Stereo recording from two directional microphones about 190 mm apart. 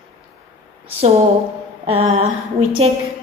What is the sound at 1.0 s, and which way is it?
A woman's voice, 35° right (ahead or behind).